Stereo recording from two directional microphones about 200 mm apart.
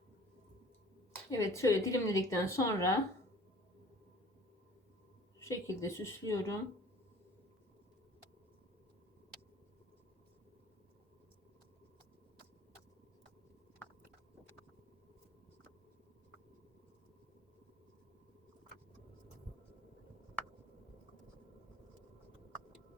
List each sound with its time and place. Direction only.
1.3 s speech: 15° left (ahead or behind)
5.4 s speech: 15° left (ahead or behind)
13.8 s a sound: 10° left (ahead or behind)